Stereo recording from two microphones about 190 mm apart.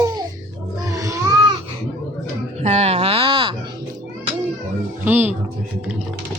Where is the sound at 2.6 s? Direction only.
35° right (ahead or behind).